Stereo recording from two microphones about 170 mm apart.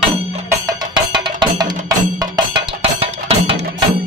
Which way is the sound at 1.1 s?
25° right (ahead or behind).